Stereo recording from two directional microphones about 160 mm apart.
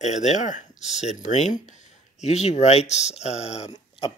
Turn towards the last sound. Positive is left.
turn(degrees=35)  # may be behind; listen again after turning